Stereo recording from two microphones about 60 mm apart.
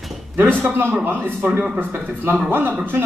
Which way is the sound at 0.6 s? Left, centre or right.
Right.